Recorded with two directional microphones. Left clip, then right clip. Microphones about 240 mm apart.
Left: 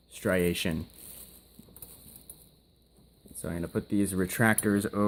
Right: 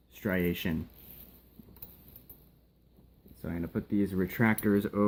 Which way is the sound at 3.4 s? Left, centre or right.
Left.